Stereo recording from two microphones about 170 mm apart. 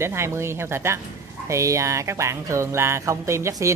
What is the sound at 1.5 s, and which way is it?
Music, 20° right (ahead or behind).